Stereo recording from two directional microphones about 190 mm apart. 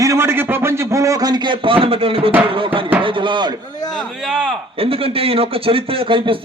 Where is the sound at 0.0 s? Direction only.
15° right (ahead or behind).